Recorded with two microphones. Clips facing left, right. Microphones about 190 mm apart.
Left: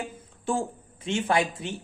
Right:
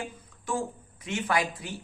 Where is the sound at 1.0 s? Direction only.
30° left (ahead or behind).